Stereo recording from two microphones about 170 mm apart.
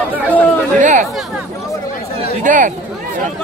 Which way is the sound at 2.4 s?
50° right (ahead or behind).